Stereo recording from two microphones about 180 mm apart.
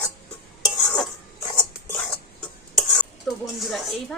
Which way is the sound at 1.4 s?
20° left (ahead or behind).